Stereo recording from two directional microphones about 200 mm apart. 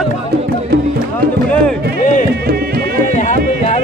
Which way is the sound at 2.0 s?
40° left (ahead or behind).